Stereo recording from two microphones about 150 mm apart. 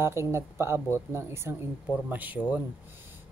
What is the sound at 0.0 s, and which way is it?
Speech, 15° right (ahead or behind).